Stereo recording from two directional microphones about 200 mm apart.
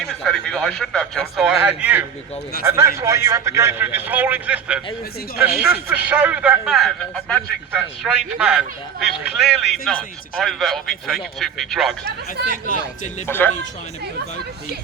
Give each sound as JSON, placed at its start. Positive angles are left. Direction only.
{"t": 0.0, "sound": "a man's voice", "side_deg": 5}
{"t": 12.5, "sound": "speech", "side_deg": 45}
{"t": 13.2, "sound": "speech", "side_deg": 10}